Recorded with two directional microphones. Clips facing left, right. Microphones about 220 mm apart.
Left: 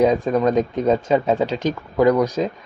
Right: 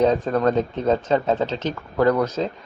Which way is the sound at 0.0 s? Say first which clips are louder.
Left 2 dB; 10° left (ahead or behind).